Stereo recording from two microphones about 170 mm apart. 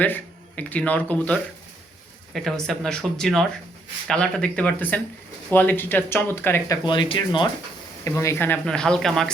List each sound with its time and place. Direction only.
0.0 s speech: 10° left (ahead or behind)
6.8 s speech: 30° left (ahead or behind)
8.0 s speech: 15° left (ahead or behind)